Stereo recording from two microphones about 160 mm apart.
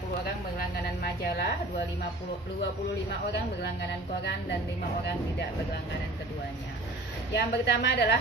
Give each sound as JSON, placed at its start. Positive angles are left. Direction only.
{"t": 1.0, "sound": "a woman's voice", "side_deg": 75}
{"t": 7.3, "sound": "a woman's voice", "side_deg": 90}